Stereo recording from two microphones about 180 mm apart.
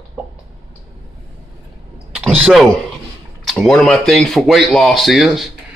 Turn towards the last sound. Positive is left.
turn(degrees=0)  # may be behind; listen again after turning